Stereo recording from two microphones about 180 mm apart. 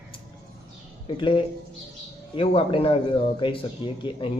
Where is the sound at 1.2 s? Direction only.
25° left (ahead or behind).